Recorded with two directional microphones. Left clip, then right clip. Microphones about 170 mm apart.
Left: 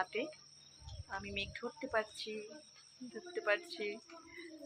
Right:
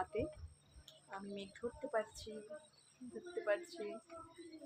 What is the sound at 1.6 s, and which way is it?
Speech, 25° left (ahead or behind).